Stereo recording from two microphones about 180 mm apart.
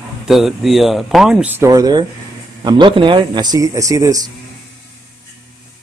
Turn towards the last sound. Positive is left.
turn(degrees=-20)  # may be behind; listen again after turning